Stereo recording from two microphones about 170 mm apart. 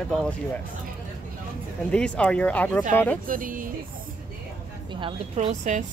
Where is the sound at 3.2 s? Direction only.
55° right (ahead or behind).